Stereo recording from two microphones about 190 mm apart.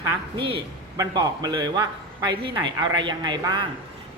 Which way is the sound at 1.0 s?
20° right (ahead or behind).